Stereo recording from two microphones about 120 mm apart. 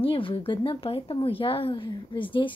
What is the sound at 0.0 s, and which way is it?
A woman's voice, 50° left (ahead or behind).